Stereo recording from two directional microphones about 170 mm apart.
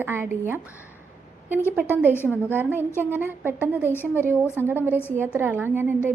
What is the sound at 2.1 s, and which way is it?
Speech, 15° left (ahead or behind).